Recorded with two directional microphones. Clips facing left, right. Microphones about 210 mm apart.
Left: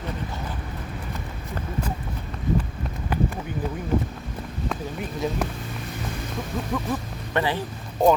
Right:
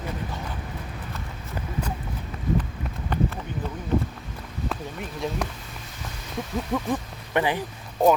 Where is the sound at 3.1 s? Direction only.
5° left (ahead or behind).